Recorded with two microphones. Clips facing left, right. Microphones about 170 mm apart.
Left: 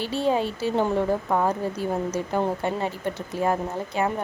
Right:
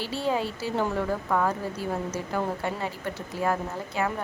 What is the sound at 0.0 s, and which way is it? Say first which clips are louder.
Speech: left 4 dB; 20° left (ahead or behind).